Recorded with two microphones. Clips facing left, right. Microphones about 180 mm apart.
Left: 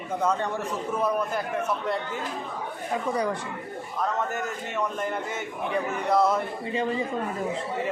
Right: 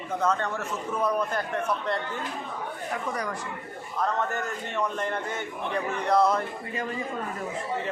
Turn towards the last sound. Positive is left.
turn(degrees=25)  # may be behind; listen again after turning